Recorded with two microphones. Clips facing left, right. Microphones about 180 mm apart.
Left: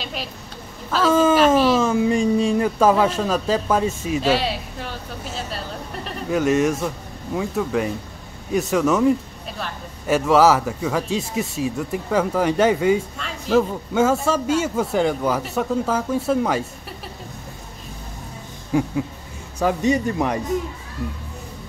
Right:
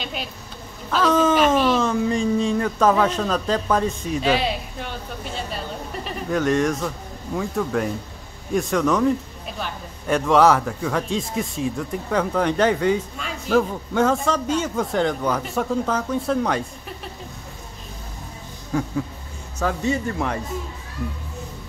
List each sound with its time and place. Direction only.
0.0 s a sound: centre (ahead or behind)
0.8 s a man's voice: 5° left (ahead or behind)
18.7 s speech: 10° left (ahead or behind)